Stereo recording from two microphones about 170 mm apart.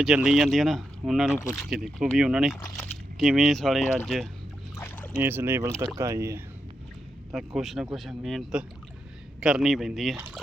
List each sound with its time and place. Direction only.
0.0 s speech: 5° right (ahead or behind)
4.8 s boat: 15° left (ahead or behind)
5.1 s speech: 15° right (ahead or behind)
7.3 s speech: centre (ahead or behind)